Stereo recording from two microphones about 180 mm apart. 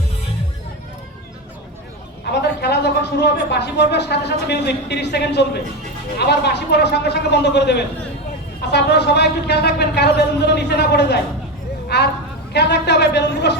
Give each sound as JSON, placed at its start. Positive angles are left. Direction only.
{"t": 2.2, "sound": "speech", "side_deg": 65}